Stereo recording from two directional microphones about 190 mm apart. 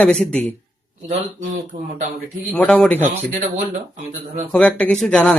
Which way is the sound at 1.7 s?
50° right (ahead or behind).